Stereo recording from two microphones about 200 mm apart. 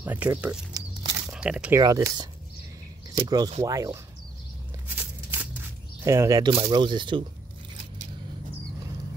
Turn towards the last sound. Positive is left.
turn(degrees=-25)  # may be behind; listen again after turning